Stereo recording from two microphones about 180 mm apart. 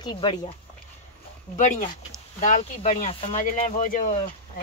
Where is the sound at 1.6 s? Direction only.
45° left (ahead or behind).